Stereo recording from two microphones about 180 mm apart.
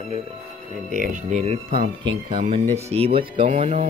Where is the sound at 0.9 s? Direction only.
45° right (ahead or behind).